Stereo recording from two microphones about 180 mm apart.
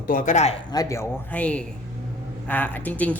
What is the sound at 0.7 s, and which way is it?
Speech, 20° left (ahead or behind).